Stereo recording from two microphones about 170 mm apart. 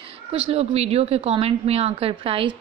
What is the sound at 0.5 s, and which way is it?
A woman's voice, 35° right (ahead or behind).